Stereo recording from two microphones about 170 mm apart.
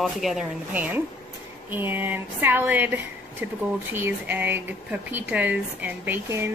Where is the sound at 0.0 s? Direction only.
Centre (ahead or behind).